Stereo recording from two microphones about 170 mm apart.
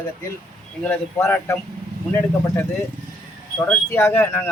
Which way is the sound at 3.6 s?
15° left (ahead or behind).